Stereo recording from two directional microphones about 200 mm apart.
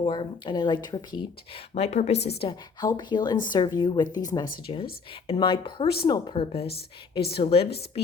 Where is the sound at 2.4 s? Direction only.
20° left (ahead or behind).